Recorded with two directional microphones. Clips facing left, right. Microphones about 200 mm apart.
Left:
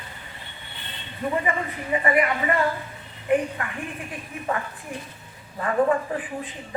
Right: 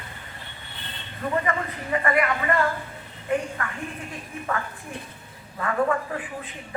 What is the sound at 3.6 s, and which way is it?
Speech, 15° left (ahead or behind).